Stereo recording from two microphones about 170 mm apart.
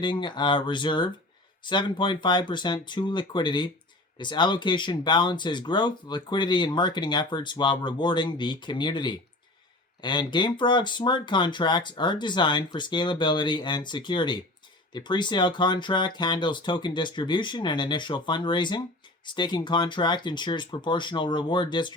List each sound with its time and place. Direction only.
0.0 s speech: 25° left (ahead or behind)